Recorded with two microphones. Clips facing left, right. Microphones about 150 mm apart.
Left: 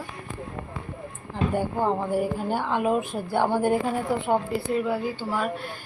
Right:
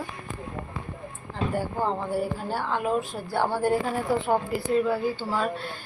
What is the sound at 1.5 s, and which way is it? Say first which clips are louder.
A woman's voice: left 3 dB; 15° left (ahead or behind).